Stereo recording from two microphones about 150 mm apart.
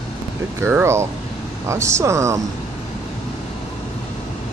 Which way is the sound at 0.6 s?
15° right (ahead or behind).